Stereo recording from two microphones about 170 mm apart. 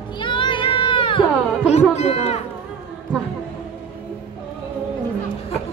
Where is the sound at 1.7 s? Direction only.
40° left (ahead or behind).